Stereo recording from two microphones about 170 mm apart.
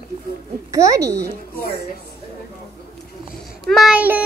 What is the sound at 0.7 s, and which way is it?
Speech, 20° right (ahead or behind).